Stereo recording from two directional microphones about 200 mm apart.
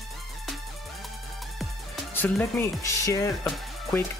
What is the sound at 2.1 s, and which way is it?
Speech, 10° left (ahead or behind).